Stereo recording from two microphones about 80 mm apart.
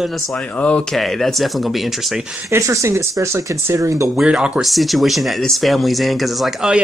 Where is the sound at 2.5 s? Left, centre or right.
Right.